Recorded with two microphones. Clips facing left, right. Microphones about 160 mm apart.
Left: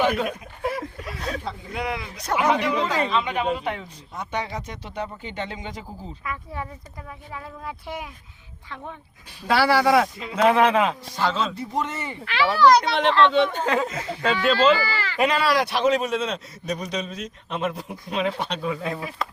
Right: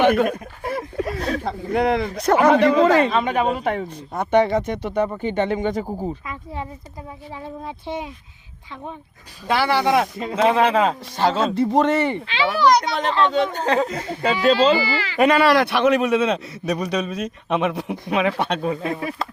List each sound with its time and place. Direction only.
0.0 s a man's voice: 55° right (ahead or behind)
6.2 s speech: 25° right (ahead or behind)
9.5 s speech: 20° right (ahead or behind); by 11.3 s 35° right (ahead or behind)
11.3 s speech: 65° right (ahead or behind)
12.2 s speech: 20° right (ahead or behind)
13.0 s speech: 40° right (ahead or behind)
14.8 s speech: 15° right (ahead or behind)
15.2 s a man's voice: 55° right (ahead or behind)